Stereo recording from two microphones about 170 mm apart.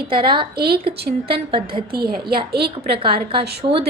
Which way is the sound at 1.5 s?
30° right (ahead or behind).